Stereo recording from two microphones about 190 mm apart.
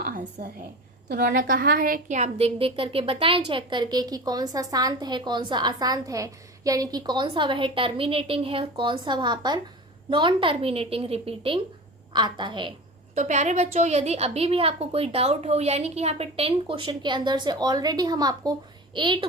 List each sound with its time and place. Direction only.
0.0 s a sound: 50° right (ahead or behind)
1.0 s a woman's voice: 55° right (ahead or behind); by 12.7 s 25° right (ahead or behind)
13.1 s a woman's voice: 40° right (ahead or behind)